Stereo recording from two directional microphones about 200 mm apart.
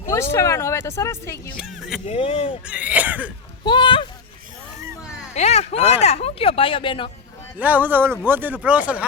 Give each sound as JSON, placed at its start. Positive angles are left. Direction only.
{"t": 0.1, "sound": "speech", "side_deg": 15}
{"t": 1.5, "sound": "vehicle", "side_deg": -5}
{"t": 2.0, "sound": "speech", "side_deg": 30}
{"t": 2.6, "sound": "speech", "side_deg": -5}
{"t": 3.6, "sound": "speech", "side_deg": 25}
{"t": 5.3, "sound": "speech", "side_deg": 35}
{"t": 7.6, "sound": "speech", "side_deg": -10}